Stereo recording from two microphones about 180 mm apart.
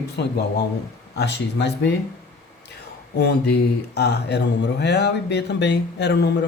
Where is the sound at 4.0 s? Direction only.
65° left (ahead or behind).